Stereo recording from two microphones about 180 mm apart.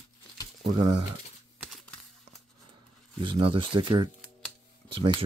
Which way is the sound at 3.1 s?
30° right (ahead or behind).